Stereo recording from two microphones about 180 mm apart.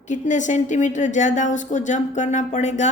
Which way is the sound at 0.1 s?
45° left (ahead or behind).